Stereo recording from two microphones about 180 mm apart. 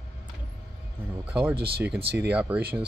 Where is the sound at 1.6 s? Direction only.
60° right (ahead or behind).